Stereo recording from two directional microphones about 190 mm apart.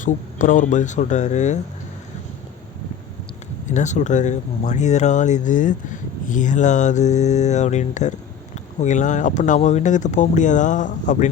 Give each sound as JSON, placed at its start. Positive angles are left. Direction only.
{"t": 0.0, "sound": "speech", "side_deg": 45}
{"t": 3.7, "sound": "speech", "side_deg": 40}